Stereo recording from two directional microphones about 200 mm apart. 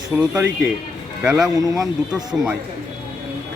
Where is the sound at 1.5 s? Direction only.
20° right (ahead or behind).